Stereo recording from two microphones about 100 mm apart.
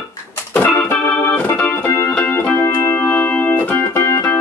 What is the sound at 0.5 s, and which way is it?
Organ, 25° left (ahead or behind).